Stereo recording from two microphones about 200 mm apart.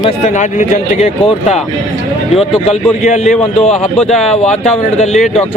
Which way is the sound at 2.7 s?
35° left (ahead or behind).